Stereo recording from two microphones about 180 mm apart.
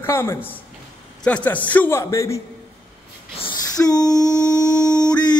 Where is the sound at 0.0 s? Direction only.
15° left (ahead or behind).